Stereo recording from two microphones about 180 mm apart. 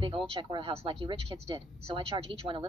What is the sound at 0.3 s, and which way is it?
A woman's voice, 25° right (ahead or behind).